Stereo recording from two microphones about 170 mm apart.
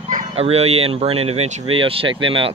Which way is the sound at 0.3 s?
35° right (ahead or behind).